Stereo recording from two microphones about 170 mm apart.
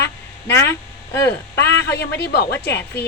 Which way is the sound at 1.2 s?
85° left.